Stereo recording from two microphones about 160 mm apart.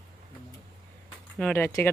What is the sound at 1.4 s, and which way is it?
Speech, 15° left (ahead or behind).